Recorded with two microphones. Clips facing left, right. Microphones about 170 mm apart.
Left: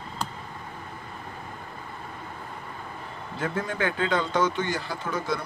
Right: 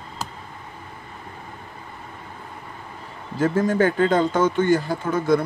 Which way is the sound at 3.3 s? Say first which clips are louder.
Right 10 dB; 45° right (ahead or behind).